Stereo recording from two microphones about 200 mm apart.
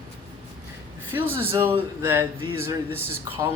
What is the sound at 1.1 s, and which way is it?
Speech, 10° right (ahead or behind).